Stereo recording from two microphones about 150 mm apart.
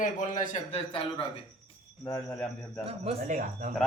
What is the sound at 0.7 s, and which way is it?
Speech, 40° left (ahead or behind).